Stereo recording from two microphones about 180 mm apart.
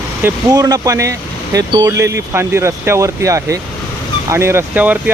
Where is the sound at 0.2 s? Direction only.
15° right (ahead or behind).